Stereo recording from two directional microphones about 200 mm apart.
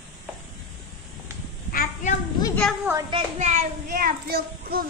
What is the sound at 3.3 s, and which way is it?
A child's voice, 35° right (ahead or behind).